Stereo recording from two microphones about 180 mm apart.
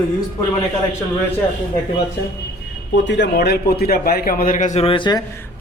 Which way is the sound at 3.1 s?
75° left (ahead or behind).